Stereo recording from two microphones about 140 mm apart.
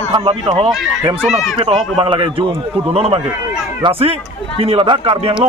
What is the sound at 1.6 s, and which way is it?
A man's voice, 40° right (ahead or behind).